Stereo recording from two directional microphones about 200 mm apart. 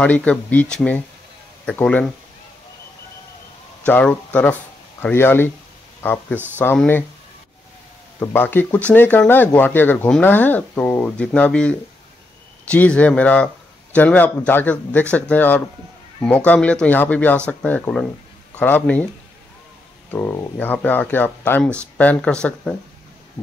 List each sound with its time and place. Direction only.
0.0 s speech: 5° left (ahead or behind)
3.8 s speech: 10° left (ahead or behind)
6.6 s speech: 10° left (ahead or behind)
8.2 s speech: 10° left (ahead or behind)
20.1 s speech: 10° left (ahead or behind)